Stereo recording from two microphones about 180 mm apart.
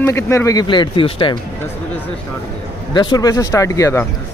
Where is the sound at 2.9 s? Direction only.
25° left (ahead or behind).